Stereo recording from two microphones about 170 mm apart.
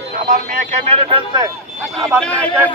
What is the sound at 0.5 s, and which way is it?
Speech, 35° right (ahead or behind).